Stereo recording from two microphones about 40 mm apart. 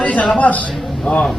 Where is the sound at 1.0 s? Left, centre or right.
Left.